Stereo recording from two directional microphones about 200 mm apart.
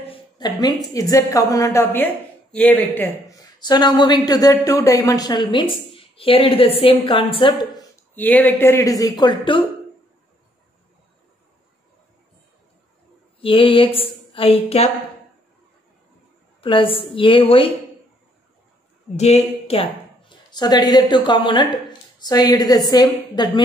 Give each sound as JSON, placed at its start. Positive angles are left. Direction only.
{"t": 0.0, "sound": "a sound", "side_deg": 25}
{"t": 0.9, "sound": "a woman's voice", "side_deg": 15}
{"t": 8.1, "sound": "speech", "side_deg": 10}
{"t": 13.4, "sound": "a woman's voice", "side_deg": 25}
{"t": 16.6, "sound": "a woman's voice", "side_deg": 25}
{"t": 19.1, "sound": "a woman's voice", "side_deg": 30}